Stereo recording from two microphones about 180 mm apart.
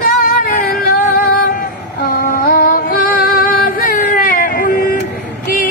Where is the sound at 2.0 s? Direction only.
55° left (ahead or behind).